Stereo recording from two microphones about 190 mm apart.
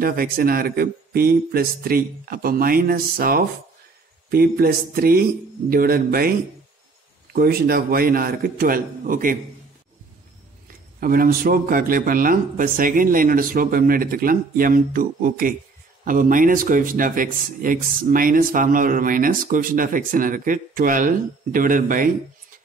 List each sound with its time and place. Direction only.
0.0 s speech: 50° right (ahead or behind)
7.3 s speech: 50° right (ahead or behind)
11.0 s speech: 50° right (ahead or behind)